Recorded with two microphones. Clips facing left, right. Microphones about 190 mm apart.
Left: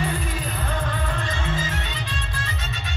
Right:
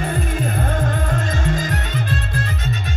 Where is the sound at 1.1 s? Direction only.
45° right (ahead or behind).